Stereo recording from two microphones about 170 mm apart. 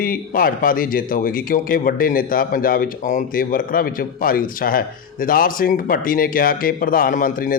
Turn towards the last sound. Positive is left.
turn(degrees=55)  # may be behind; listen again after turning